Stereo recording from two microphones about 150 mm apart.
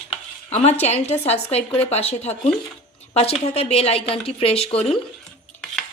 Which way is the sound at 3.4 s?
45° left (ahead or behind).